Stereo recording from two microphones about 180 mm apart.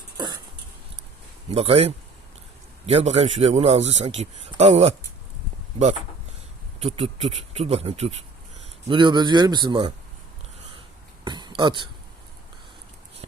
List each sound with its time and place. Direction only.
1.5 s a man's voice: 35° right (ahead or behind)
6.7 s a man's voice: 35° right (ahead or behind)
11.3 s speech: 25° right (ahead or behind)